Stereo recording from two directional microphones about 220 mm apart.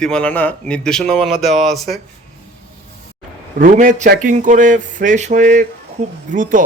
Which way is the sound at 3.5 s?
35° right (ahead or behind).